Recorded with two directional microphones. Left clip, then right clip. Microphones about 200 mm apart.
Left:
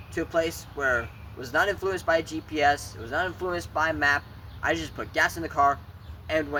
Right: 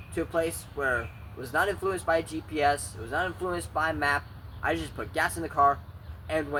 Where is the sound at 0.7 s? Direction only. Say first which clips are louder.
Left 3 dB; 20° left (ahead or behind).